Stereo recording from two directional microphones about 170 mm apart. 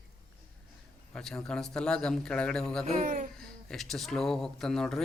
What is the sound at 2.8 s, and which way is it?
Speech, 45° right (ahead or behind).